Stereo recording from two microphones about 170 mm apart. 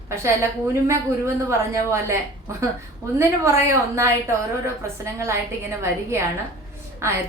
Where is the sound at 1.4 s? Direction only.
15° right (ahead or behind).